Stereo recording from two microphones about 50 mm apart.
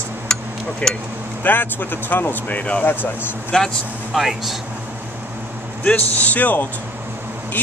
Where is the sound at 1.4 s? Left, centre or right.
Left.